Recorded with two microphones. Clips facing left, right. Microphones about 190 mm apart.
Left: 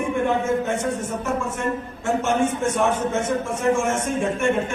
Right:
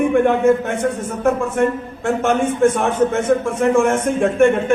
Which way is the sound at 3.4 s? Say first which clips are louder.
Right 6 dB; 60° right (ahead or behind).